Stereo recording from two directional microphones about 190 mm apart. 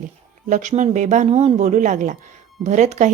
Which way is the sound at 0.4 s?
40° right (ahead or behind).